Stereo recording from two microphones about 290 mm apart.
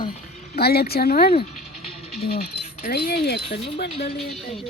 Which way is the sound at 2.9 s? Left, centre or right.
Left.